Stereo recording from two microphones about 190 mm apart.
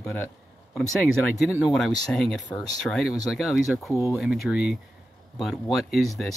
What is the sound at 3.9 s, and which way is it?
Speech, 15° left (ahead or behind).